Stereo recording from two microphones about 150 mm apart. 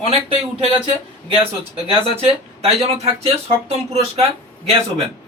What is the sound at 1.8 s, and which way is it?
Speech, 40° right (ahead or behind).